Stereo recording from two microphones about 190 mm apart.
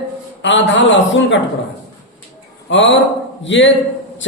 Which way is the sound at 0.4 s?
75° left (ahead or behind).